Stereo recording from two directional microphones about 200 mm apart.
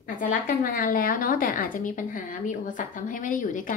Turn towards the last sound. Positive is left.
turn(degrees=40)  # may be behind; listen again after turning